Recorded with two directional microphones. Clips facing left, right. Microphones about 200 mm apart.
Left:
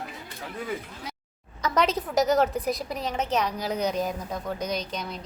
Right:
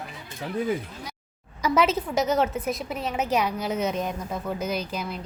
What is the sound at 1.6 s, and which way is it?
A woman's voice, 5° right (ahead or behind).